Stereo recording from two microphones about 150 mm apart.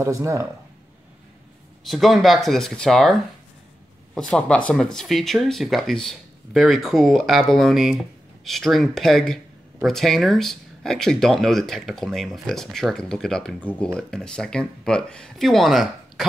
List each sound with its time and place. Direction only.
0.0 s speech: 20° right (ahead or behind)
1.9 s speech: centre (ahead or behind)